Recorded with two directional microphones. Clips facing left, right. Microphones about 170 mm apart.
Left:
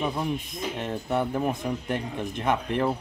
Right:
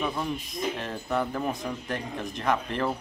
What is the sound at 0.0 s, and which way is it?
Speech, 15° left (ahead or behind).